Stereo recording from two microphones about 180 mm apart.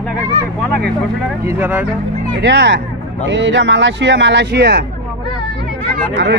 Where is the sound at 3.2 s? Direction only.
90° right; by 4.8 s 65° right (ahead or behind).